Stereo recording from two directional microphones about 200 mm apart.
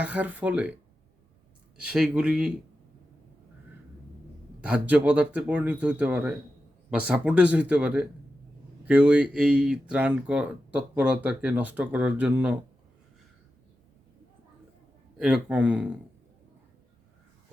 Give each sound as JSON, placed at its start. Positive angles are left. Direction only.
{"t": 0.0, "sound": "speech", "side_deg": -10}
{"t": 1.8, "sound": "speech", "side_deg": -5}
{"t": 4.6, "sound": "speech", "side_deg": -5}
{"t": 15.2, "sound": "speech", "side_deg": -5}